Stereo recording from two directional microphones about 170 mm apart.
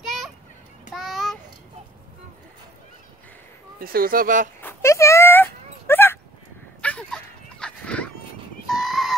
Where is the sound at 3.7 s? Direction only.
60° right (ahead or behind).